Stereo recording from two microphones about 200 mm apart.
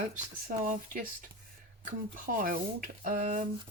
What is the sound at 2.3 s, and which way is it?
Speech, 45° right (ahead or behind).